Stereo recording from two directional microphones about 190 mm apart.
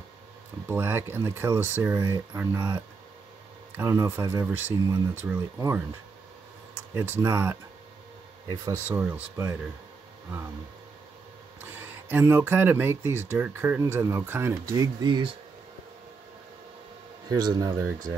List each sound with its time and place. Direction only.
0.7 s speech: 10° right (ahead or behind)
6.9 s speech: 15° right (ahead or behind)
8.6 s speech: 15° right (ahead or behind)
11.6 s speech: 10° right (ahead or behind)
17.3 s speech: 20° right (ahead or behind)